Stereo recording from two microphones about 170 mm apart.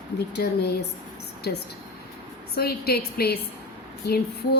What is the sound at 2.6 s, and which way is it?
A woman's voice, 65° left (ahead or behind).